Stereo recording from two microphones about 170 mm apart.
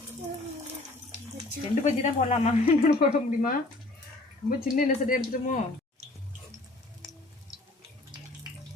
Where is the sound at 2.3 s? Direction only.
40° left (ahead or behind).